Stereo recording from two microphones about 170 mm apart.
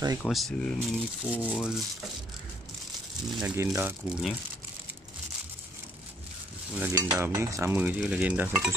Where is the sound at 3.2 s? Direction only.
Centre (ahead or behind).